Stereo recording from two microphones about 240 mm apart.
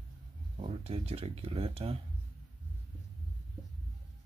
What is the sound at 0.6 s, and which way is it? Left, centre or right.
Speech, right.